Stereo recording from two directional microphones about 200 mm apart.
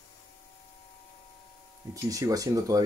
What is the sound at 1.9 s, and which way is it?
Speech, 15° right (ahead or behind).